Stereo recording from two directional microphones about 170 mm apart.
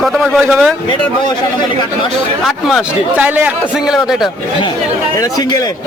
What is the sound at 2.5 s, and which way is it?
A man's voice, 5° right (ahead or behind).